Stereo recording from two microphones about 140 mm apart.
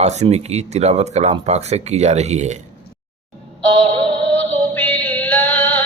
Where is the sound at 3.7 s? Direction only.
40° right (ahead or behind).